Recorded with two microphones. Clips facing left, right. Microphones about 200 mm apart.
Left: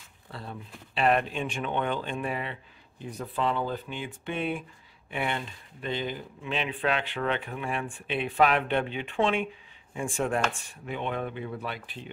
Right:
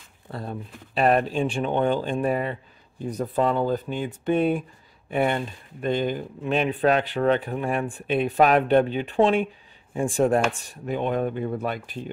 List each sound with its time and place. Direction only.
0.3 s speech: 45° right (ahead or behind)